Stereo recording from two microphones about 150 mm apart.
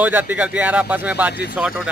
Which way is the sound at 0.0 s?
10° right (ahead or behind).